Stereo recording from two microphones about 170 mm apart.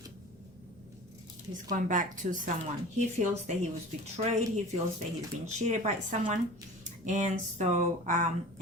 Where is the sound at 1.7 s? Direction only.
50° right (ahead or behind).